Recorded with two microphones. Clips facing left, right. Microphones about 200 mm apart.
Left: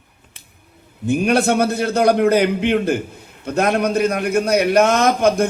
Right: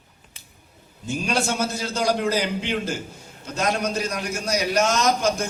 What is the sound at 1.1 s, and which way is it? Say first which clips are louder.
A man's voice: left 9 dB; 60° left (ahead or behind).